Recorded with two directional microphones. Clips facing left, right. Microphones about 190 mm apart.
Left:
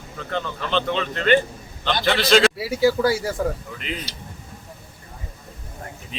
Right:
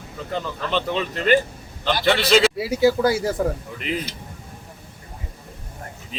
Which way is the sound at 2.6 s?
20° right (ahead or behind).